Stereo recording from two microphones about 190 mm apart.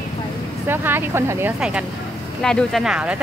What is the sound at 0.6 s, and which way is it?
Speech, 10° right (ahead or behind).